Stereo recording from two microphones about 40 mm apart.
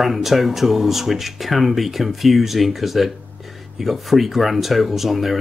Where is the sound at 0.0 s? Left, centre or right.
Centre.